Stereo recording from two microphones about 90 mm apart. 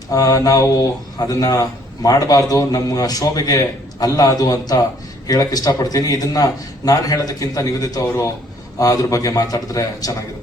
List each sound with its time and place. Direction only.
0.1 s speech: 40° left (ahead or behind)